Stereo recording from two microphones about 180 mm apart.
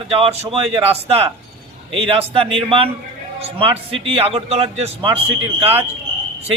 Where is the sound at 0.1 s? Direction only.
35° right (ahead or behind).